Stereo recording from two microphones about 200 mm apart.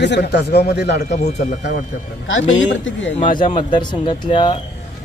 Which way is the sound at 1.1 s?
35° left (ahead or behind).